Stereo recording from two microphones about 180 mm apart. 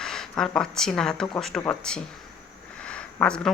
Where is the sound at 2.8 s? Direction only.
5° left (ahead or behind).